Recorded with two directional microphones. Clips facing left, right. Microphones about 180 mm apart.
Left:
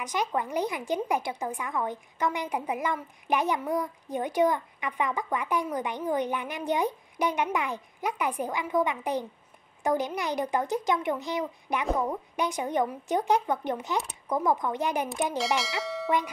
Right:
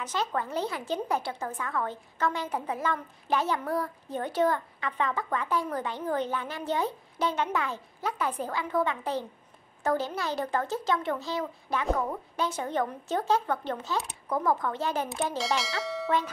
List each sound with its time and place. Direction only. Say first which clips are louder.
0.0 s a woman's voice: left 1 dB; 15° left (ahead or behind)
15.3 s speech: left 2 dB; centre (ahead or behind)
15.8 s bell: even; centre (ahead or behind)